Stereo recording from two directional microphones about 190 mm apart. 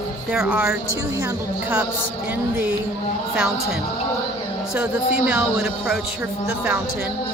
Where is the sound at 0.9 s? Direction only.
15° right (ahead or behind).